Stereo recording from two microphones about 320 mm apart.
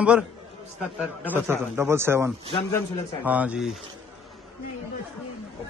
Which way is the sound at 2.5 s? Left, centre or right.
Centre.